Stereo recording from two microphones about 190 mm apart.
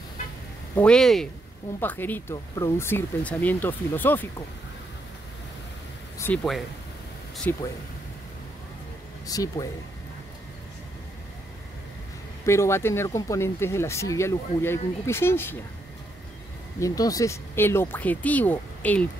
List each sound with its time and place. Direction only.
0.7 s speech: 5° left (ahead or behind)
6.1 s speech: 10° left (ahead or behind)
9.3 s speech: 20° left (ahead or behind)
12.4 s speech: 15° left (ahead or behind)
16.8 s speech: 20° left (ahead or behind)